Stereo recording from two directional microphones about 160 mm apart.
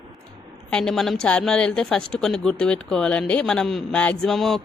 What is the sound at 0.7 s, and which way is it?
A woman's voice, 5° left (ahead or behind).